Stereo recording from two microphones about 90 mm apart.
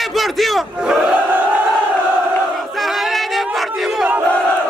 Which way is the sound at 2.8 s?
Centre (ahead or behind).